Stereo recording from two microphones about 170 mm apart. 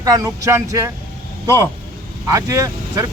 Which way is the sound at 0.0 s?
20° right (ahead or behind).